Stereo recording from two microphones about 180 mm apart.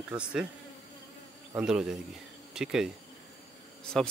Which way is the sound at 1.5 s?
5° right (ahead or behind).